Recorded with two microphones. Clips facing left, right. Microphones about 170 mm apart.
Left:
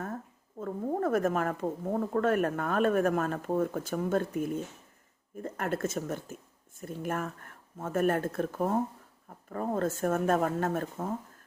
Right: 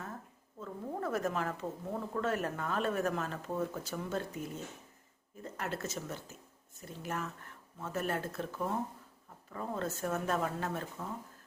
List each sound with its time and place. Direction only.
0.6 s speech: 50° left (ahead or behind)